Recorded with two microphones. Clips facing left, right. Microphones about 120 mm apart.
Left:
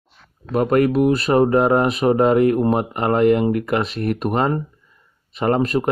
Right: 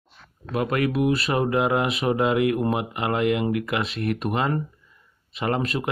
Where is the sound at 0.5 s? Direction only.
40° left (ahead or behind).